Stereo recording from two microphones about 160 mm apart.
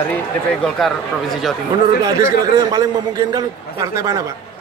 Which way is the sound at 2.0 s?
25° right (ahead or behind).